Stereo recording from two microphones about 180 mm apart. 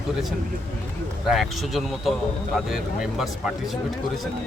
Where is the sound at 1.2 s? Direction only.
Centre (ahead or behind).